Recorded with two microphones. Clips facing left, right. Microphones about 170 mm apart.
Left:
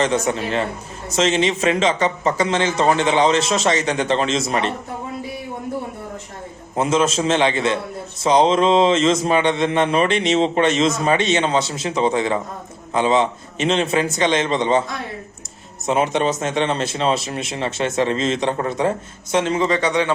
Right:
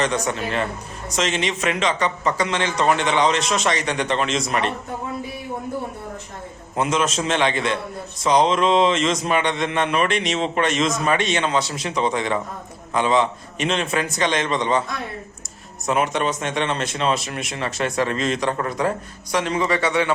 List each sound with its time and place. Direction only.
0.0 s speech: 30° left (ahead or behind)
6.7 s speech: 30° left (ahead or behind)
15.9 s a man's voice: 30° left (ahead or behind)